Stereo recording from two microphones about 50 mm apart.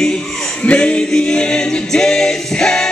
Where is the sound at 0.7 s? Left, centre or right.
Left.